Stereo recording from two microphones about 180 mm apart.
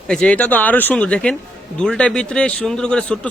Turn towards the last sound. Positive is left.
turn(degrees=5)  # may be behind; listen again after turning